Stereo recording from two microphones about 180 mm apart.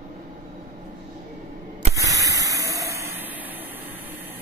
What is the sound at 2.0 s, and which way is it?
Spray, 20° right (ahead or behind).